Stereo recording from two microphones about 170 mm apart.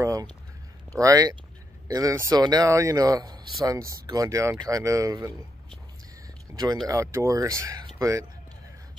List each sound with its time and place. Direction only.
0.0 s a sound: 20° right (ahead or behind)
0.9 s speech: 20° right (ahead or behind)
6.5 s speech: 15° right (ahead or behind)